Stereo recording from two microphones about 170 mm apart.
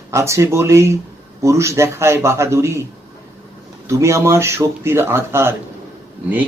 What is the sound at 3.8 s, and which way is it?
Speech, 15° right (ahead or behind).